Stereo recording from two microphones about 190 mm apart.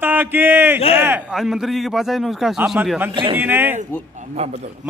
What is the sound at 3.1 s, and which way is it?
Speech, 25° right (ahead or behind).